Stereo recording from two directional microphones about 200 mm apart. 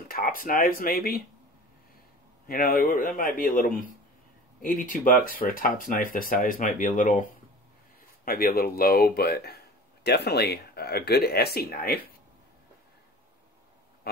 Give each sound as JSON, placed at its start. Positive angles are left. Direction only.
{"t": 0.1, "sound": "speech", "side_deg": 45}
{"t": 2.4, "sound": "speech", "side_deg": 45}
{"t": 8.3, "sound": "speech", "side_deg": 50}